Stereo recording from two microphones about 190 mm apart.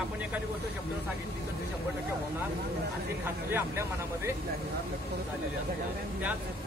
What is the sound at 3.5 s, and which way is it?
Speech, 15° right (ahead or behind).